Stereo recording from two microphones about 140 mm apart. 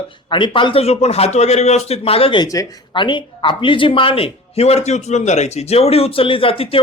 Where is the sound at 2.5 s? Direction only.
30° left (ahead or behind).